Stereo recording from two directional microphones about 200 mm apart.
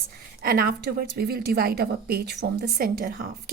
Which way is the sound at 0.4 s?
50° right (ahead or behind).